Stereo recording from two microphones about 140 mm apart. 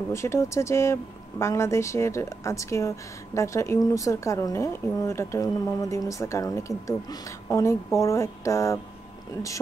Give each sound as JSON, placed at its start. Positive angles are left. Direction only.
{"t": 0.1, "sound": "speech", "side_deg": 20}